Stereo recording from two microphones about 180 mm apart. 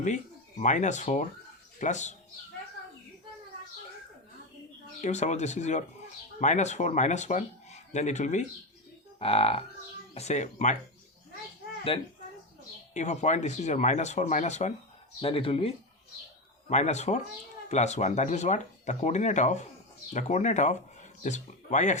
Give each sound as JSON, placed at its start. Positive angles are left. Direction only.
{"t": 0.6, "sound": "speech", "side_deg": 40}
{"t": 4.9, "sound": "speech", "side_deg": 40}
{"t": 11.9, "sound": "speech", "side_deg": 30}